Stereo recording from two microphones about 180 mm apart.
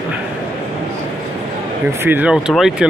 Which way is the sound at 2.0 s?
10° right (ahead or behind).